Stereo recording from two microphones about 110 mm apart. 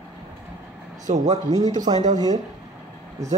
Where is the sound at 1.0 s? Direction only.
90° right.